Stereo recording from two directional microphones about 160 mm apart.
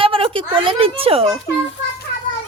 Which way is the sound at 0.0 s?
35° right (ahead or behind).